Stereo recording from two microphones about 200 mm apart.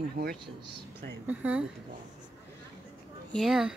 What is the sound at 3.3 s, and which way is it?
Speech, centre (ahead or behind).